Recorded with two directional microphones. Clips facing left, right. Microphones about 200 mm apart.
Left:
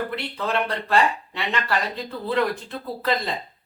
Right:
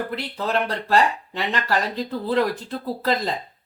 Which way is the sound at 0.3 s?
40° right (ahead or behind).